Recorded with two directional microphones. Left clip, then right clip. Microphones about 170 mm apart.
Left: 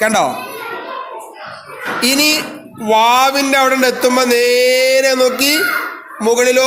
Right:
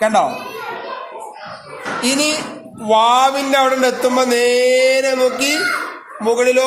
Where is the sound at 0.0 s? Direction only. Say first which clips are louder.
Left 1 dB; 35° left (ahead or behind).